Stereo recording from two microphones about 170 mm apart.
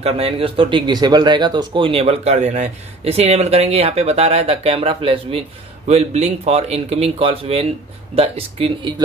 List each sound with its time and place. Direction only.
0.0 s speech: 35° right (ahead or behind)